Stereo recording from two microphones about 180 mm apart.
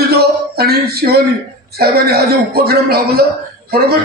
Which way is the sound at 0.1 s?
60° right (ahead or behind).